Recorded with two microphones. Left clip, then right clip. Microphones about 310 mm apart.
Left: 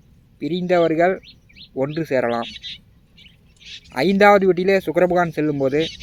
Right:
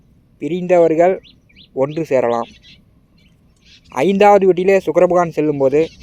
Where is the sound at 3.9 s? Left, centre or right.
Centre.